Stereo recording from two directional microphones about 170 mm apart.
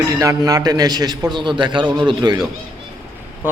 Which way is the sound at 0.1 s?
20° right (ahead or behind).